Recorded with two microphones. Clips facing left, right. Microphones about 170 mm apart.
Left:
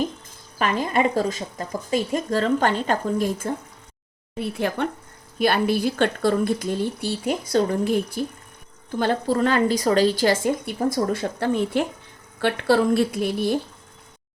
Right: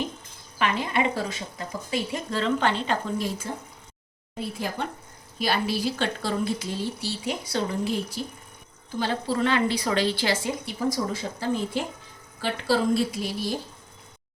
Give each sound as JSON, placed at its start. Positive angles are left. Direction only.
{"t": 0.6, "sound": "a woman's voice", "side_deg": 45}
{"t": 4.4, "sound": "a woman's voice", "side_deg": 65}